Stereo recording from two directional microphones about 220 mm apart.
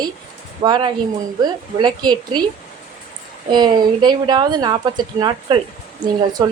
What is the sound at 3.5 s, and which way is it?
Speech, 20° right (ahead or behind).